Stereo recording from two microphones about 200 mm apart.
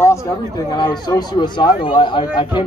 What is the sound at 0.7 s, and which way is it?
Speech, 20° left (ahead or behind).